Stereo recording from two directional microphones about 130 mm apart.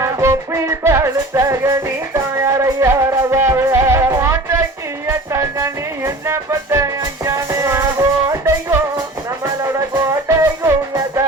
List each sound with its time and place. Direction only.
0.0 s music: 20° right (ahead or behind)
9.9 s music: 20° right (ahead or behind)